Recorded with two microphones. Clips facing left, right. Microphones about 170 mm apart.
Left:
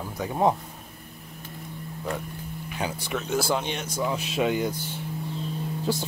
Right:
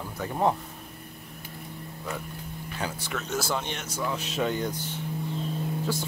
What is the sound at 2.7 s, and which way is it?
Speech, 15° left (ahead or behind).